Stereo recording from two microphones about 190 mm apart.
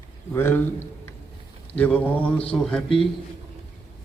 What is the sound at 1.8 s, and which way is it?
Mantra, 5° left (ahead or behind).